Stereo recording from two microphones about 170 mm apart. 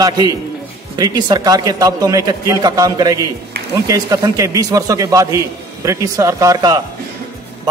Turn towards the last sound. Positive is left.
turn(degrees=-20)  # may be behind; listen again after turning